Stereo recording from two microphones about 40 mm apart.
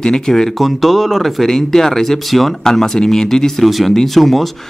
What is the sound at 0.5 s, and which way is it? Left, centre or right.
Speech, centre.